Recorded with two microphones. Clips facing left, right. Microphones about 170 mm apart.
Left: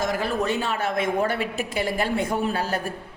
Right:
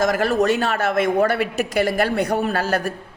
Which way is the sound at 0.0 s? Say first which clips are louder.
Right 6 dB; 90° right.